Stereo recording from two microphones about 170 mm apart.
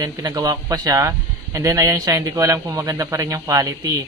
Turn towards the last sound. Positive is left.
turn(degrees=-20)  # may be behind; listen again after turning